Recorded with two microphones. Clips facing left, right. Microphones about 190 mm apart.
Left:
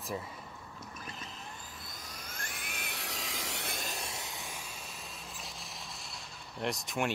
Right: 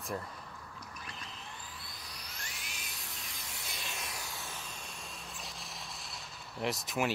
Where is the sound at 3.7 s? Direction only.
40° left (ahead or behind); by 7.1 s centre (ahead or behind).